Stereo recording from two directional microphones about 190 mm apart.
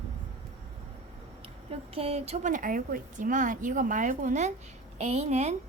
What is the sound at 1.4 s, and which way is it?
A woman's voice, 30° right (ahead or behind).